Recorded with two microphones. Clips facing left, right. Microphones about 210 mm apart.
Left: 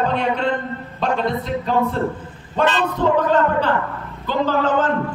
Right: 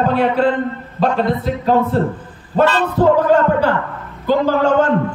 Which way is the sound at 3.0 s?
40° right (ahead or behind).